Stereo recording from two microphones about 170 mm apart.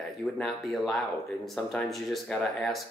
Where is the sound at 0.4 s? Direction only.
Centre (ahead or behind).